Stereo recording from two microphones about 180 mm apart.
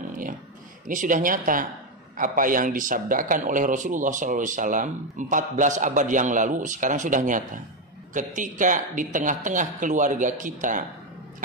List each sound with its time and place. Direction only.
0.8 s a man's voice: 45° right (ahead or behind)